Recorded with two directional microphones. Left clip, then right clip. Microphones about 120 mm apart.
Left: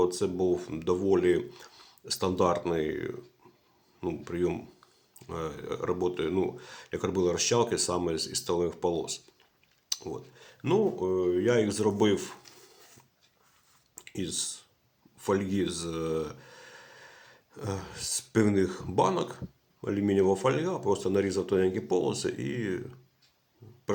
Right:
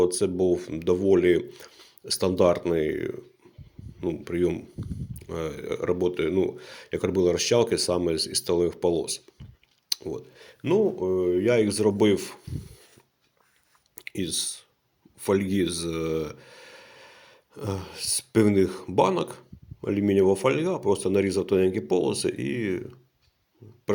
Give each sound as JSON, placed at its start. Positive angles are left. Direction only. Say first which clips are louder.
{"t": 0.0, "sound": "speech", "louder": "right 4 dB", "side_deg": -25}
{"t": 1.7, "sound": "a sound", "louder": "right 2 dB", "side_deg": -10}
{"t": 2.0, "sound": "speech", "louder": "right 5 dB", "side_deg": -25}
{"t": 4.2, "sound": "speech", "louder": "right 5 dB", "side_deg": -25}
{"t": 10.1, "sound": "a sound", "louder": "right 5 dB", "side_deg": -25}
{"t": 10.6, "sound": "speech", "louder": "right 4 dB", "side_deg": -20}
{"t": 13.9, "sound": "clicking", "louder": "right 5 dB", "side_deg": -30}
{"t": 15.2, "sound": "speech", "louder": "right 4 dB", "side_deg": -30}